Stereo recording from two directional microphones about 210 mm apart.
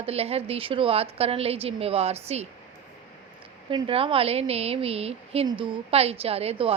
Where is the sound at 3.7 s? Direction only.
25° right (ahead or behind).